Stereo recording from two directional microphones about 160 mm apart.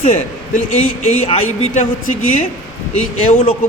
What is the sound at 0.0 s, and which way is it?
Speech, 50° left (ahead or behind).